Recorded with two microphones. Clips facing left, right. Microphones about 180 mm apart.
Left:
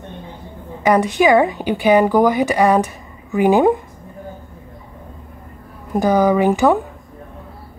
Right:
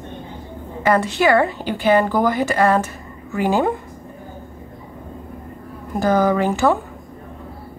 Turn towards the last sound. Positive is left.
turn(degrees=15)  # may be behind; listen again after turning